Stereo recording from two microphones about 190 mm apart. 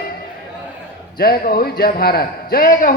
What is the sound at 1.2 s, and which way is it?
A man's voice, 55° left (ahead or behind).